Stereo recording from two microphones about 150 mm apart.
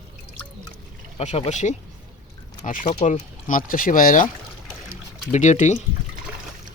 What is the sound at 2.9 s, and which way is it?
Speech, 50° left (ahead or behind).